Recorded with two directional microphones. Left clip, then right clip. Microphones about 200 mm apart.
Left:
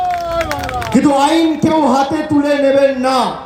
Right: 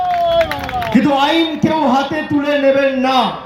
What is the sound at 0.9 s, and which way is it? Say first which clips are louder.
Speech: left 2 dB; 70° left (ahead or behind).